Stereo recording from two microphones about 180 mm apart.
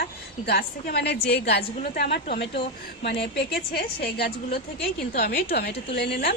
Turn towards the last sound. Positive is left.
turn(degrees=65)  # may be behind; listen again after turning